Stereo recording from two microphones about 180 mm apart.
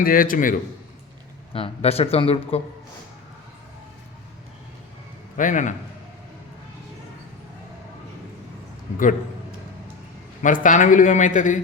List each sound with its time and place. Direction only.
0.0 s a man's voice: 50° left (ahead or behind)
1.5 s a man's voice: 35° left (ahead or behind)
5.4 s a man's voice: 45° left (ahead or behind)
8.9 s a man's voice: 40° left (ahead or behind)
10.4 s a man's voice: 45° left (ahead or behind)